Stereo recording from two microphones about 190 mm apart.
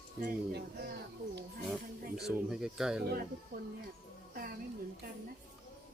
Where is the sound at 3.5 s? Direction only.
50° right (ahead or behind).